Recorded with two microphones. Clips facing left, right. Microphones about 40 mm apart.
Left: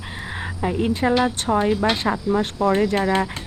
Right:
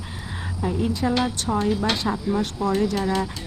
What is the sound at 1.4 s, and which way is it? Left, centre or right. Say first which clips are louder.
Speech: left 3 dB; left.